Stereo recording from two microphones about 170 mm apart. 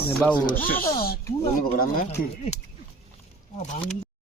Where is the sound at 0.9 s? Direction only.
60° left (ahead or behind).